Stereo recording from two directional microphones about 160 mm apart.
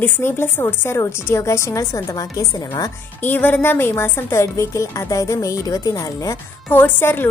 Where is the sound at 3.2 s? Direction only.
10° left (ahead or behind).